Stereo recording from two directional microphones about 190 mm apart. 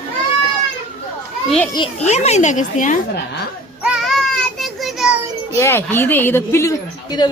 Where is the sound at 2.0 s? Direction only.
35° left (ahead or behind).